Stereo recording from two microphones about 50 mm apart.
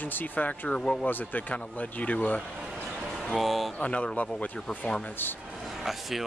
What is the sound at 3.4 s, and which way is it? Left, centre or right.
Speech, centre.